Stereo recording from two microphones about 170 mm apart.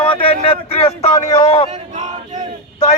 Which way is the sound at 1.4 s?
40° left (ahead or behind).